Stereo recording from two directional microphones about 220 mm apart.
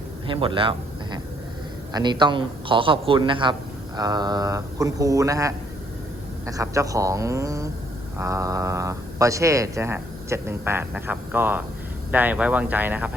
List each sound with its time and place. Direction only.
0.3 s a man's voice: 25° right (ahead or behind); by 13.1 s 5° right (ahead or behind)